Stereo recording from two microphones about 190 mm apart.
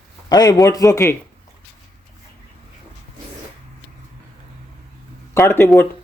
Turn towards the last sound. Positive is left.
turn(degrees=10)  # may be behind; listen again after turning